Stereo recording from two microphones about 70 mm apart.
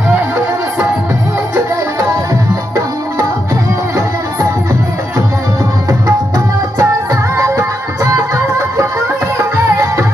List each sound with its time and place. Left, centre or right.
5.9 s tabla: right
7.3 s music: right
9.4 s music: right